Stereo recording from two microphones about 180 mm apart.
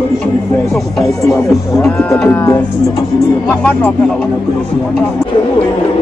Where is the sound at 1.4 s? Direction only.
15° left (ahead or behind).